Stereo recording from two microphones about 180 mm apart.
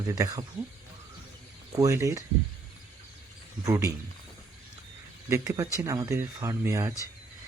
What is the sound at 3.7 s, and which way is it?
Speech, 15° right (ahead or behind).